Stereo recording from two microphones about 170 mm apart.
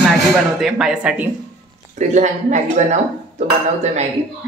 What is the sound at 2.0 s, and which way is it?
Speech, 45° right (ahead or behind).